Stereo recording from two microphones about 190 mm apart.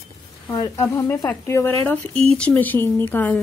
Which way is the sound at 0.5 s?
15° left (ahead or behind).